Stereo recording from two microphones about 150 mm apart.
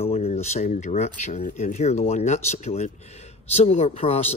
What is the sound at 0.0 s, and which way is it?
Speech, 45° left (ahead or behind).